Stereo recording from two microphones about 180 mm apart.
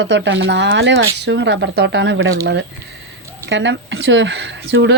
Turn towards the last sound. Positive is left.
turn(degrees=-80)